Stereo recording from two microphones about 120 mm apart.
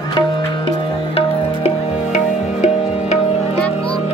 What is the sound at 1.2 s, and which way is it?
Music, 65° left (ahead or behind).